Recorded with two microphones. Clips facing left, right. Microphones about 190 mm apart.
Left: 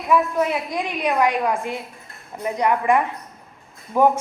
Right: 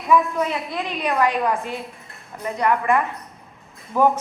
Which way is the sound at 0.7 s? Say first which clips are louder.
Left 2 dB; 15° left (ahead or behind).